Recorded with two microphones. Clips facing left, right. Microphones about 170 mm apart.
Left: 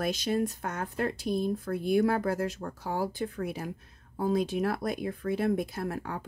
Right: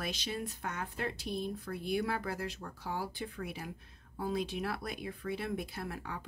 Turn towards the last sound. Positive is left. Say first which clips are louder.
# left 7 dB
turn(degrees=45)  # may be behind; listen again after turning